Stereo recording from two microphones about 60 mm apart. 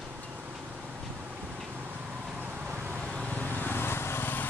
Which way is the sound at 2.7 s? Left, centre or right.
Right.